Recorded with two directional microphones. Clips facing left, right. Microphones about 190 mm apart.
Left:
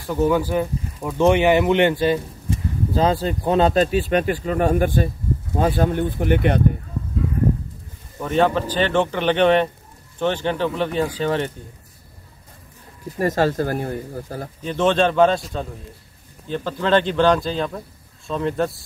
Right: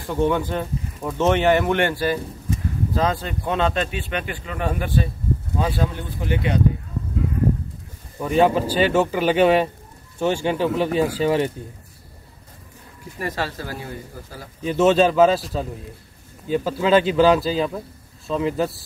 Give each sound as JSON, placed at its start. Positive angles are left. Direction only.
{"t": 0.1, "sound": "speech", "side_deg": 5}
{"t": 8.2, "sound": "speech", "side_deg": -10}
{"t": 13.2, "sound": "speech", "side_deg": 45}
{"t": 14.6, "sound": "speech", "side_deg": -5}